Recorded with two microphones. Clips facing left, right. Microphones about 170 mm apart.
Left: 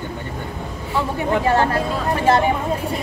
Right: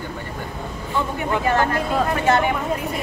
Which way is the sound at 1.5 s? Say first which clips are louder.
Even; 30° left (ahead or behind).